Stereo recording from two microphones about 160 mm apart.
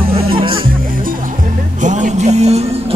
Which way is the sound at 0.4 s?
30° right (ahead or behind).